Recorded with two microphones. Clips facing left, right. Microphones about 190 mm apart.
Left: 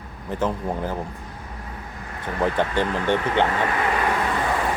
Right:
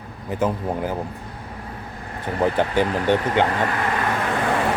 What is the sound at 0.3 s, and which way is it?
Speech, 10° right (ahead or behind).